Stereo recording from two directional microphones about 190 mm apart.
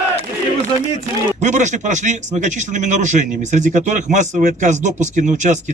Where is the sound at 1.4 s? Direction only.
40° right (ahead or behind).